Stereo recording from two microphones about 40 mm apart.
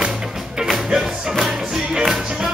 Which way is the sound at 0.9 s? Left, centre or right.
Centre.